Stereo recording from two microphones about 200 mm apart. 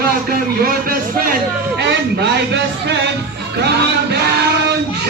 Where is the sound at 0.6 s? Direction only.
45° right (ahead or behind).